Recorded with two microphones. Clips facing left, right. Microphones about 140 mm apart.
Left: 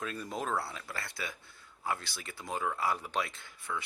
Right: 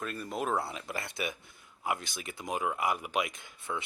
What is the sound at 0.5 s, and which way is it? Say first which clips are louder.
Speech: right 3 dB; 20° right (ahead or behind).